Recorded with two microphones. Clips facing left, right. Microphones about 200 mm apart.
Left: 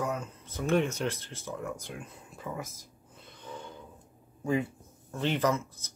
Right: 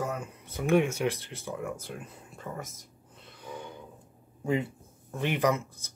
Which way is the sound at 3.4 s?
15° right (ahead or behind).